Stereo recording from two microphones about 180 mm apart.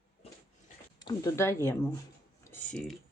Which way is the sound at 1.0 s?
20° left (ahead or behind).